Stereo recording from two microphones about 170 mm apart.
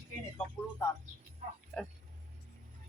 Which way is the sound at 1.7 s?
5° left (ahead or behind).